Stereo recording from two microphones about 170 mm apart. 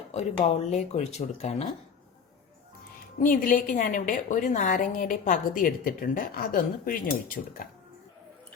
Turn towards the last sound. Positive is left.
turn(degrees=55)  # may be behind; listen again after turning